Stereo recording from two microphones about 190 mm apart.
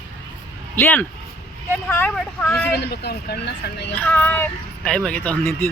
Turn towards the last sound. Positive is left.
turn(degrees=10)  # may be behind; listen again after turning